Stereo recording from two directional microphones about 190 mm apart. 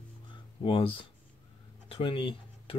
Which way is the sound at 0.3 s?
25° left (ahead or behind).